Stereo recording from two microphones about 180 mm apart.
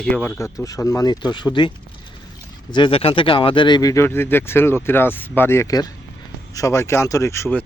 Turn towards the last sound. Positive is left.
turn(degrees=15)  # may be behind; listen again after turning